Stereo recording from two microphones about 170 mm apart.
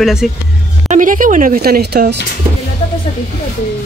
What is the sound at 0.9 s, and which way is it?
Speech, 50° right (ahead or behind).